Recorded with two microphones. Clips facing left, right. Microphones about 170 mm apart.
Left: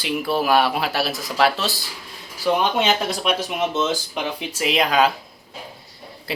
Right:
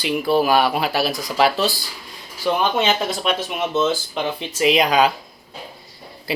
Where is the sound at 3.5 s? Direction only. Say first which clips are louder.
Right 2 dB; 15° left (ahead or behind).